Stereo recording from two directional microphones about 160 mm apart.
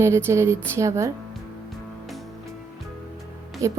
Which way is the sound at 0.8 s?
20° right (ahead or behind).